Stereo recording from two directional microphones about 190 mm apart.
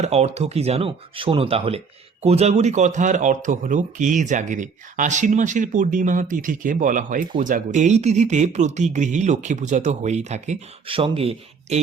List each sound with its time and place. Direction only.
0.0 s a man's voice: 35° right (ahead or behind)